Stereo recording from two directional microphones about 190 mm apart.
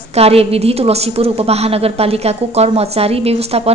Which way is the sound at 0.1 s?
30° right (ahead or behind).